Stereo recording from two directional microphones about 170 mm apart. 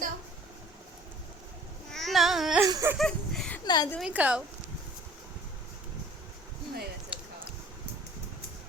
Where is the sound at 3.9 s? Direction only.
5° right (ahead or behind).